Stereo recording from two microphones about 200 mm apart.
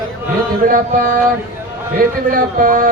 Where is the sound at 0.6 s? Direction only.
45° right (ahead or behind).